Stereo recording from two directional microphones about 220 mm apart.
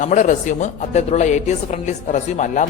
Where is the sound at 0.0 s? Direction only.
35° left (ahead or behind).